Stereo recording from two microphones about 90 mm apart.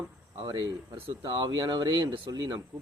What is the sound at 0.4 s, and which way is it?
Speech, 50° right (ahead or behind).